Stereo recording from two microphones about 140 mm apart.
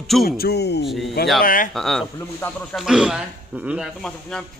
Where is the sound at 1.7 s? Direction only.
5° left (ahead or behind).